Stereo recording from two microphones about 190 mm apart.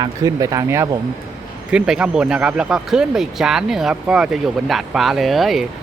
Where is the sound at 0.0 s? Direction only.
20° right (ahead or behind).